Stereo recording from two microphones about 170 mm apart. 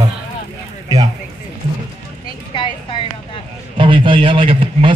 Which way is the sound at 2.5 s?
30° left (ahead or behind).